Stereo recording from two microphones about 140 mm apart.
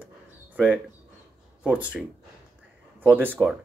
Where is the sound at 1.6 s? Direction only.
10° right (ahead or behind).